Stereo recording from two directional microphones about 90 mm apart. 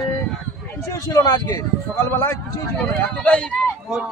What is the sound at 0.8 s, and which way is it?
Speech, 40° left (ahead or behind).